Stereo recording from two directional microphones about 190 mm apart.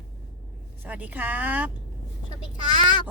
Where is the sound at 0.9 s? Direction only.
10° right (ahead or behind).